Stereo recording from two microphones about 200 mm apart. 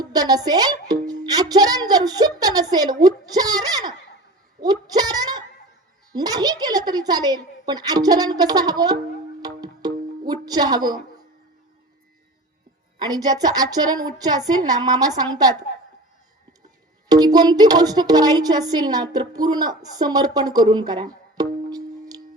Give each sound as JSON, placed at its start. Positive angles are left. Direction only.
{"t": 0.0, "sound": "speech", "side_deg": -20}
{"t": 4.6, "sound": "a sound", "side_deg": -20}
{"t": 6.1, "sound": "a woman's voice", "side_deg": -20}
{"t": 9.4, "sound": "music", "side_deg": -20}
{"t": 13.0, "sound": "a woman's voice", "side_deg": -20}
{"t": 17.1, "sound": "a woman's voice", "side_deg": -20}